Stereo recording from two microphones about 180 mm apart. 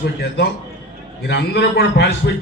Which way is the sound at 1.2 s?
70° left (ahead or behind).